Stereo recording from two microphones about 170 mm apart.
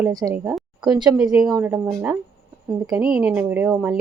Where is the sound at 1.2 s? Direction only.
5° right (ahead or behind).